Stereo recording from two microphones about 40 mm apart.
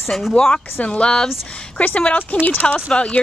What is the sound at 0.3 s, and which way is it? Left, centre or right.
Speech, left.